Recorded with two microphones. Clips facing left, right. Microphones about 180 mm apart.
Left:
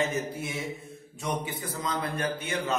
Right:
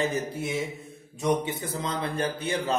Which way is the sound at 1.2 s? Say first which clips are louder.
Right 6 dB; 25° right (ahead or behind).